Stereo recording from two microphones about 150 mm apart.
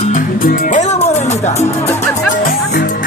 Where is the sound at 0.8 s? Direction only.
50° left (ahead or behind).